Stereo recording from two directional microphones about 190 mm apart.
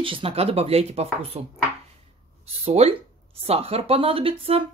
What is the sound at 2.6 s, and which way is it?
Speech, 35° right (ahead or behind).